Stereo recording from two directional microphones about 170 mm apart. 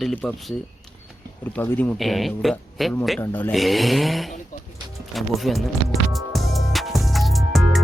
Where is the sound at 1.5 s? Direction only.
10° left (ahead or behind).